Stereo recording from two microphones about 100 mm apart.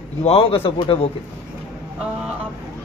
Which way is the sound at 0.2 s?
70° left (ahead or behind).